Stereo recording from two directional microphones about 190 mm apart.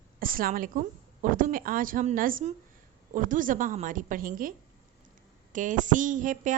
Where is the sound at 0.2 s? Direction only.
50° right (ahead or behind).